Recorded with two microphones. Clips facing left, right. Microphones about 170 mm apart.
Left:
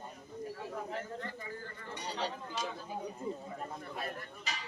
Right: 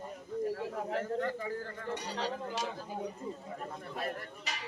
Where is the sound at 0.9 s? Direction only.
75° right (ahead or behind).